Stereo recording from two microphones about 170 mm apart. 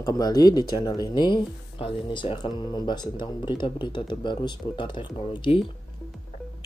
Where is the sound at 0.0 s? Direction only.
20° left (ahead or behind).